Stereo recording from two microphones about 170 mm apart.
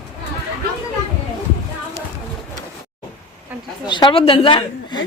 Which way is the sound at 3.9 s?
30° left (ahead or behind).